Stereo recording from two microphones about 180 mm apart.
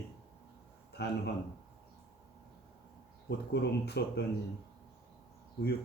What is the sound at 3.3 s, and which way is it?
Speech, 65° left (ahead or behind).